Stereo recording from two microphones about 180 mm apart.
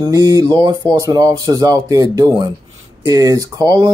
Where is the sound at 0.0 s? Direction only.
20° right (ahead or behind).